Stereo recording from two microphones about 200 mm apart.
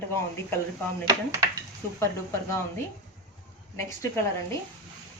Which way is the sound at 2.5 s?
15° left (ahead or behind).